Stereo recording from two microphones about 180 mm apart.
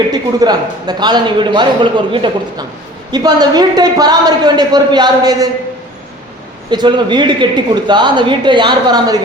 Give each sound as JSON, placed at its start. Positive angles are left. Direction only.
{"t": 0.1, "sound": "a man's voice", "side_deg": -20}
{"t": 6.7, "sound": "a man's voice", "side_deg": -25}